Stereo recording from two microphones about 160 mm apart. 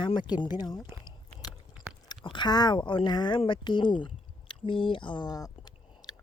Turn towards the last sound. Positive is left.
turn(degrees=25)  # may be behind; listen again after turning